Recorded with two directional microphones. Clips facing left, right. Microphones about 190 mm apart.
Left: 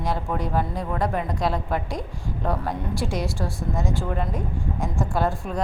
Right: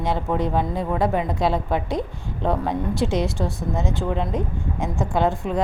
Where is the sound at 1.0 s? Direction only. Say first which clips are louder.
Right 4 dB; 5° right (ahead or behind).